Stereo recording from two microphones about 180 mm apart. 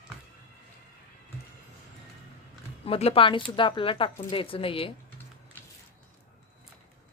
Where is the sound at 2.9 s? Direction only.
35° left (ahead or behind).